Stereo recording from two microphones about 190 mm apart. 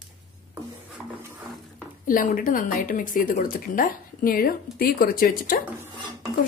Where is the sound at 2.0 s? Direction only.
45° left (ahead or behind).